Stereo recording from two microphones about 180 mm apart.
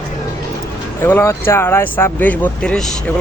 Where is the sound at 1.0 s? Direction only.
15° left (ahead or behind).